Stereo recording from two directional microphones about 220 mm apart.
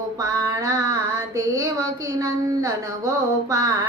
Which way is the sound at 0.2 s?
15° right (ahead or behind).